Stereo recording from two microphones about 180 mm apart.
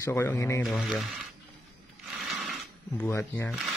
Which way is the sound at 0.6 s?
Centre (ahead or behind).